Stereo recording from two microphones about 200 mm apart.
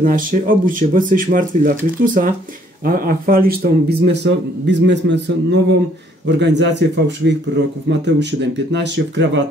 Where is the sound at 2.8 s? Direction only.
45° right (ahead or behind); by 9.4 s 60° right (ahead or behind).